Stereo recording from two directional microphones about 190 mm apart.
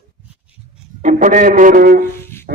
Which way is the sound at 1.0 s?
45° right (ahead or behind).